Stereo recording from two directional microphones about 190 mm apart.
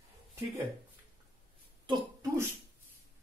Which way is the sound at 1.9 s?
20° right (ahead or behind).